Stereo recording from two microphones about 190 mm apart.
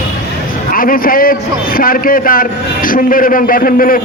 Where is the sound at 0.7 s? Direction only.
50° left (ahead or behind).